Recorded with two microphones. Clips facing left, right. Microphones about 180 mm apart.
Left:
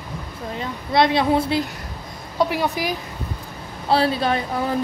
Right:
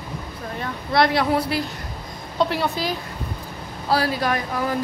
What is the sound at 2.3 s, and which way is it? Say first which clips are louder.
A woman's voice: left 1 dB; 10° left (ahead or behind).